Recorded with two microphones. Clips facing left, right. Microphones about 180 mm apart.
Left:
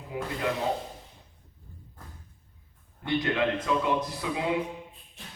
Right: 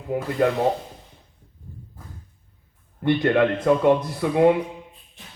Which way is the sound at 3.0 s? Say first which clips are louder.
Right 8 dB; 55° right (ahead or behind).